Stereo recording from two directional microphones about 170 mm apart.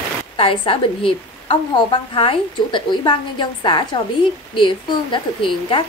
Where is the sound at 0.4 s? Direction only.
30° left (ahead or behind).